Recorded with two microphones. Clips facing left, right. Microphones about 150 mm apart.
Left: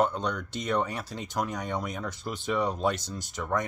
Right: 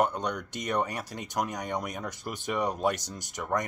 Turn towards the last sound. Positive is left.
turn(degrees=-15)  # may be behind; listen again after turning